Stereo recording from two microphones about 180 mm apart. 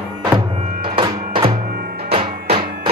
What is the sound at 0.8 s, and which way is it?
Music, 30° right (ahead or behind).